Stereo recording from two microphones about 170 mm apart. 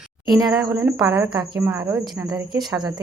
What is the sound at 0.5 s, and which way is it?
Speech, 5° right (ahead or behind).